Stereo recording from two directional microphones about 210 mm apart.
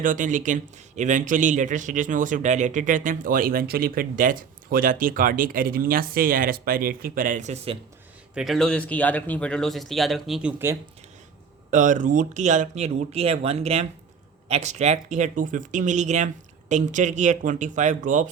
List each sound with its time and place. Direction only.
0.0 s speech: 40° right (ahead or behind)
8.4 s speech: centre (ahead or behind)
11.7 s speech: 35° right (ahead or behind)